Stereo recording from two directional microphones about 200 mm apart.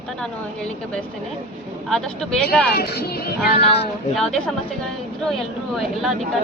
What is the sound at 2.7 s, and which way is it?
Speech, 50° left (ahead or behind).